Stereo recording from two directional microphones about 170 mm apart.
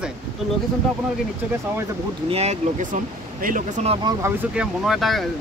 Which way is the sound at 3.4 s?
50° right (ahead or behind).